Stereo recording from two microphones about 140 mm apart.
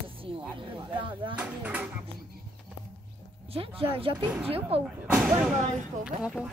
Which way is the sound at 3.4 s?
40° right (ahead or behind).